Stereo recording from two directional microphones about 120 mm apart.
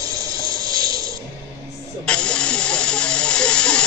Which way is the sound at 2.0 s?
5° left (ahead or behind).